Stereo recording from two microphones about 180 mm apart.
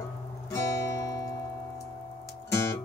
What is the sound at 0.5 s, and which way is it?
Music, 15° left (ahead or behind).